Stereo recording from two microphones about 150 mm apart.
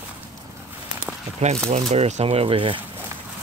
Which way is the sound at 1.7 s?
50° right (ahead or behind).